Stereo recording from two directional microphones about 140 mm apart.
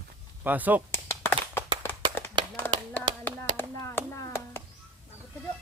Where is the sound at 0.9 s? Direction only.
15° left (ahead or behind).